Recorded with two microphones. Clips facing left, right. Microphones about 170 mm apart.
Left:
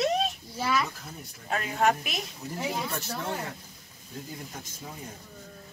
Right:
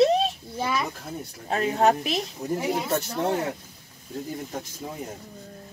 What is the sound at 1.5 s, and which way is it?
Speech, 35° right (ahead or behind).